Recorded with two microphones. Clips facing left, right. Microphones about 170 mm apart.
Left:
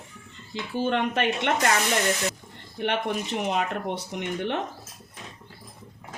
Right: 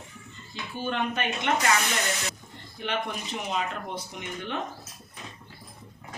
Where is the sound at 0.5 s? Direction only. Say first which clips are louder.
Left 5 dB; 80° left.